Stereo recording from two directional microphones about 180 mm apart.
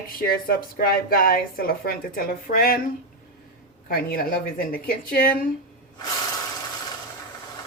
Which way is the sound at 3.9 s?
50° left (ahead or behind).